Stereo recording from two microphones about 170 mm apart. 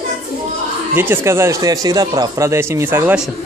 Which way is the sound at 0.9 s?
10° right (ahead or behind).